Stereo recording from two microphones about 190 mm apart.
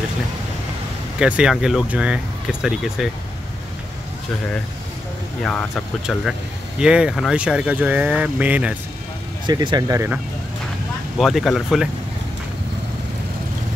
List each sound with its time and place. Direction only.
1.2 s speech: 5° right (ahead or behind)
5.4 s speech: 5° left (ahead or behind)
9.5 s speech: 20° right (ahead or behind)
11.1 s speech: centre (ahead or behind)